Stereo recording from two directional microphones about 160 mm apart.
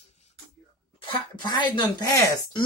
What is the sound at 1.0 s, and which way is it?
Speech, 30° left (ahead or behind).